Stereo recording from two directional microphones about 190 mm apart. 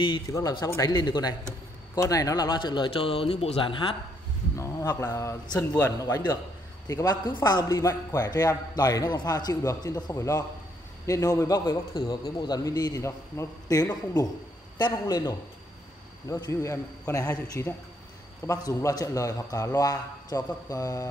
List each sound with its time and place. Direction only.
0.0 s a man's voice: 20° left (ahead or behind)
4.6 s a man's voice: 15° left (ahead or behind)